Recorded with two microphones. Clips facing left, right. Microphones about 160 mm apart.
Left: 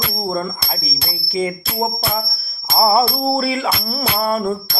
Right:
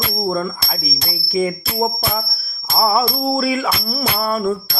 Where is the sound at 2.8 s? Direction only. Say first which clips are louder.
Left 2 dB; 35° left (ahead or behind).